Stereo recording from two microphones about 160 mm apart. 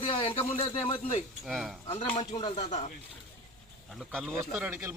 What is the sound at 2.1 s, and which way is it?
Speech, 35° left (ahead or behind).